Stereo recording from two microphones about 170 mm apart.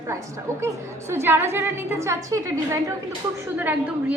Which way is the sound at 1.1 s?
15° right (ahead or behind).